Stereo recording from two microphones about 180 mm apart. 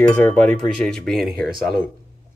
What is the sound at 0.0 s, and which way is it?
Speech, 5° left (ahead or behind).